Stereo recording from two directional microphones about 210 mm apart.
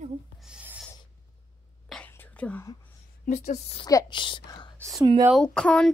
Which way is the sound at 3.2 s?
35° left (ahead or behind).